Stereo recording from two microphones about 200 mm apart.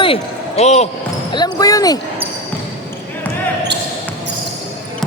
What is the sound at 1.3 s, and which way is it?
Speech, 20° left (ahead or behind).